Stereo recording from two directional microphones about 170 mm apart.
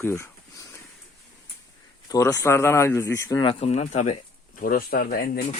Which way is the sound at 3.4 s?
35° left (ahead or behind).